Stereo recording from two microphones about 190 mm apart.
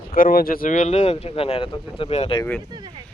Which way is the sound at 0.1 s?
45° left (ahead or behind).